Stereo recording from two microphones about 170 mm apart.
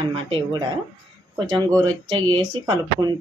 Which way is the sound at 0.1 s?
30° right (ahead or behind).